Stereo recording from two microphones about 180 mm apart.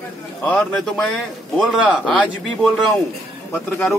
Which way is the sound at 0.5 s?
5° left (ahead or behind).